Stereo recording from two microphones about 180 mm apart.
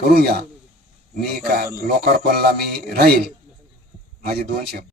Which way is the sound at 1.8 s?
60° right (ahead or behind).